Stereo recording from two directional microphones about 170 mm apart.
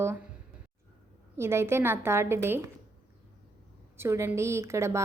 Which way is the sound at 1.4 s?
15° right (ahead or behind).